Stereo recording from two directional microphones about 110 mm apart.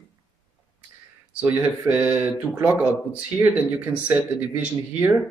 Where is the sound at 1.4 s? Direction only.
15° right (ahead or behind).